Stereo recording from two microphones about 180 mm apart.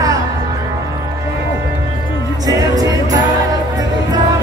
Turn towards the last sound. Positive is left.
turn(degrees=-20)  # may be behind; listen again after turning